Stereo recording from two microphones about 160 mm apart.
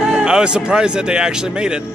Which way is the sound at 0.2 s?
5° right (ahead or behind).